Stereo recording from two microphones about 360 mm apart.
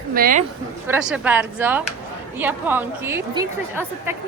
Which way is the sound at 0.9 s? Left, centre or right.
Centre.